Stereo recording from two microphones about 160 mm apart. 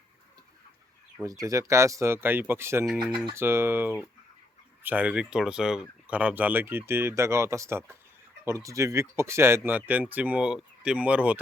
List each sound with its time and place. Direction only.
1.2 s speech: 20° right (ahead or behind)